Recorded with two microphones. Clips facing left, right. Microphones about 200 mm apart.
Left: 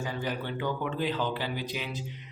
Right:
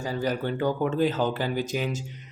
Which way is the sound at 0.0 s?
40° right (ahead or behind).